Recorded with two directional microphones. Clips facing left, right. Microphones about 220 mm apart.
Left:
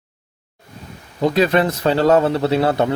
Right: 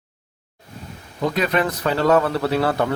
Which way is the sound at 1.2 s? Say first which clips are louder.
Left 5 dB; 30° left (ahead or behind).